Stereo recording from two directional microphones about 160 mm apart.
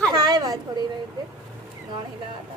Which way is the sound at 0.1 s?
25° right (ahead or behind).